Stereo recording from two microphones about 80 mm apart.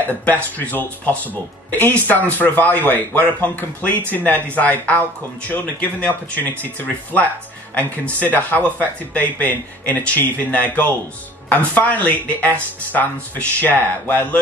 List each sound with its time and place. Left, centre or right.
0.2 s speech: left